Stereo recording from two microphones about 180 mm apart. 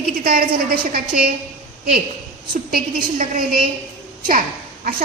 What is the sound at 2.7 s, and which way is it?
Speech, 55° right (ahead or behind).